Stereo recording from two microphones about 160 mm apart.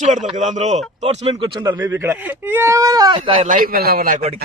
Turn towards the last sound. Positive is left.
turn(degrees=-65)  # may be behind; listen again after turning